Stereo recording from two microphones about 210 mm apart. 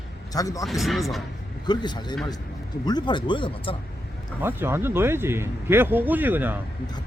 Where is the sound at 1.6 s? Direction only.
20° left (ahead or behind).